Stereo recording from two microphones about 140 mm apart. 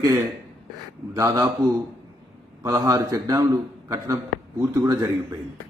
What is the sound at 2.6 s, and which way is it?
A man's voice, 20° right (ahead or behind).